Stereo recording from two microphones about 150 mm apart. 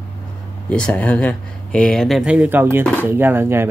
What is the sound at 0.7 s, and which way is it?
Speech, 5° left (ahead or behind).